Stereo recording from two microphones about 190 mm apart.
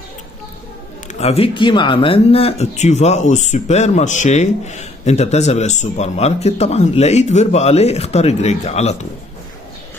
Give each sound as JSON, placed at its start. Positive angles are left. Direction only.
{"t": 1.0, "sound": "speech", "side_deg": 35}